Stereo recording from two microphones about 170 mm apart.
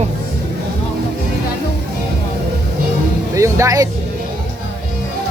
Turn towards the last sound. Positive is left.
turn(degrees=-20)  # may be behind; listen again after turning